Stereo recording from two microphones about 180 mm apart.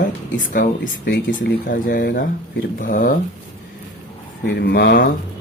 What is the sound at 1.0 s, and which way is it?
Speech, 75° left (ahead or behind).